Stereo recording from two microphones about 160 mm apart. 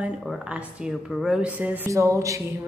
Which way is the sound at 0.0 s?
5° right (ahead or behind).